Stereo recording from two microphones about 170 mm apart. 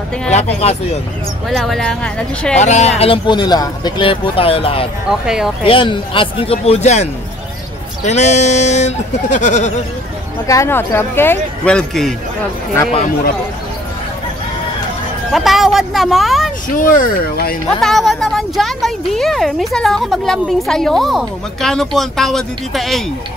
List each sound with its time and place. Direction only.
0.6 s a man's voice: 40° left (ahead or behind)
1.5 s a woman's voice: 5° left (ahead or behind)
2.5 s speech: 45° left (ahead or behind)
3.0 s a man's voice: 30° left (ahead or behind)
5.0 s a woman's voice: 5° right (ahead or behind)
5.7 s a man's voice: 30° left (ahead or behind); by 9.7 s 45° left (ahead or behind)
10.4 s speech: 20° left (ahead or behind)
15.3 s a woman's voice: centre (ahead or behind)
16.7 s speech: 55° left (ahead or behind)
17.6 s a woman's voice: centre (ahead or behind)